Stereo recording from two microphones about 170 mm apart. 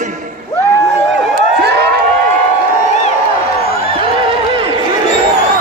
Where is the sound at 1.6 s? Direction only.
80° right.